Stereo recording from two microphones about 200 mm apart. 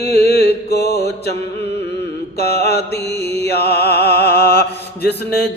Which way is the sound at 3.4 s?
55° left (ahead or behind).